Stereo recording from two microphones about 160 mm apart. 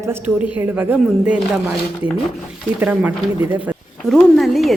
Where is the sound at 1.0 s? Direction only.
Centre (ahead or behind).